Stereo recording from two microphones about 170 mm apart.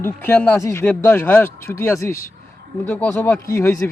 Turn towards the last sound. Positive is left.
turn(degrees=15)  # may be behind; listen again after turning